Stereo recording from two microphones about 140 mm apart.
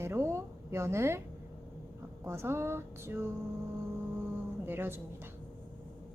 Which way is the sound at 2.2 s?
20° right (ahead or behind).